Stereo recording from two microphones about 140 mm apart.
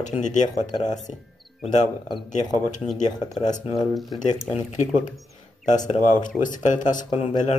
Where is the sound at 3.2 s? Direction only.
30° left (ahead or behind).